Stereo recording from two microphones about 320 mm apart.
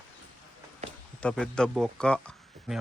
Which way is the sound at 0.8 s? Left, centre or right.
Right.